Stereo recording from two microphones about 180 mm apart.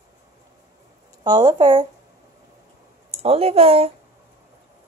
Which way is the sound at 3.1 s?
35° right (ahead or behind).